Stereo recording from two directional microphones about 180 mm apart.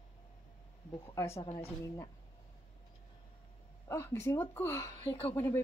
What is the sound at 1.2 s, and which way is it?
Speech, 15° left (ahead or behind).